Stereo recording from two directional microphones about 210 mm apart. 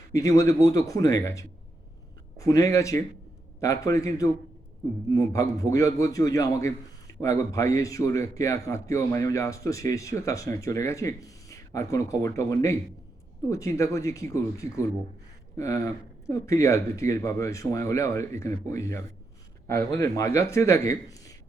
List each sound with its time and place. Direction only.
0.1 s a man's voice: 15° left (ahead or behind)